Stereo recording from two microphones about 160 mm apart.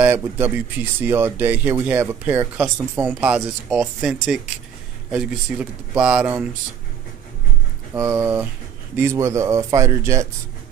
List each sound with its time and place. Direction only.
0.0 s speech: 10° right (ahead or behind)
7.9 s a man's voice: 15° right (ahead or behind)